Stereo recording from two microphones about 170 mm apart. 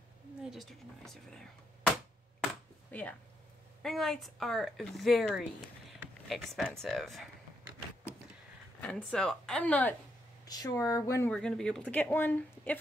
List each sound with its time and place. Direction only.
0.4 s speech: centre (ahead or behind)
2.9 s speech: 10° left (ahead or behind)
8.8 s speech: 5° left (ahead or behind)
10.4 s speech: 25° left (ahead or behind)
11.2 s speech: 5° left (ahead or behind)